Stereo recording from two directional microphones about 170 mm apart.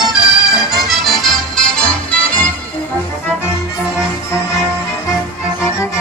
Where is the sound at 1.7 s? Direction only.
5° left (ahead or behind).